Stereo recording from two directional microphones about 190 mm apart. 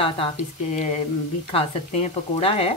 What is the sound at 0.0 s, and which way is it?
Speech, 30° left (ahead or behind).